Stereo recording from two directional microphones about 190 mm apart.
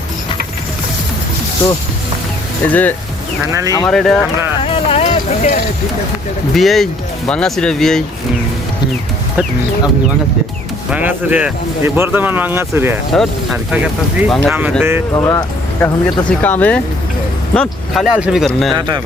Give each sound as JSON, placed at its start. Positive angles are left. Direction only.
{"t": 2.6, "sound": "speech", "side_deg": 10}
{"t": 4.6, "sound": "music", "side_deg": 30}
{"t": 6.5, "sound": "speech", "side_deg": 0}
{"t": 10.9, "sound": "speech", "side_deg": -10}
{"t": 14.5, "sound": "speech", "side_deg": -10}
{"t": 15.1, "sound": "speech", "side_deg": 20}
{"t": 16.4, "sound": "speech", "side_deg": 10}